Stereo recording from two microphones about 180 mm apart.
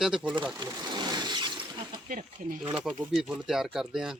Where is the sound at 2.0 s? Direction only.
45° right (ahead or behind).